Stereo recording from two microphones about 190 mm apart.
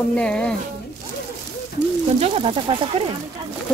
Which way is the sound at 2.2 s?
30° right (ahead or behind).